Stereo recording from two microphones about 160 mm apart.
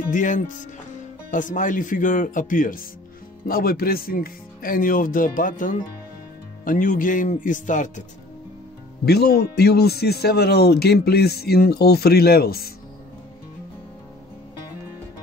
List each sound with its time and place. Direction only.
0.1 s speech: 55° left (ahead or behind)
9.0 s speech: 80° left